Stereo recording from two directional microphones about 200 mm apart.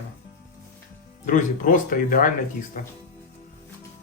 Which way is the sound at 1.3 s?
40° left (ahead or behind).